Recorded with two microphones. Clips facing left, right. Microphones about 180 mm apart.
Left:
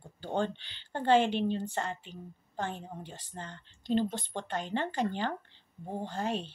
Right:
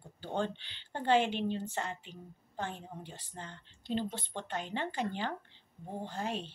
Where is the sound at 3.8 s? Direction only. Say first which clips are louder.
Left 6 dB; 45° left (ahead or behind).